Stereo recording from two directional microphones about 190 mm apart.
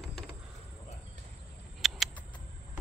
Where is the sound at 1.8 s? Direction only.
Centre (ahead or behind).